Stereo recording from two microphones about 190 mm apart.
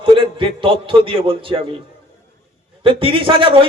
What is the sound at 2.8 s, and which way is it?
Speech, 30° right (ahead or behind).